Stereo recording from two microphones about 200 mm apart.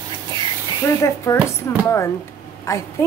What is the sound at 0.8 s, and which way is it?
A woman's voice, 15° left (ahead or behind).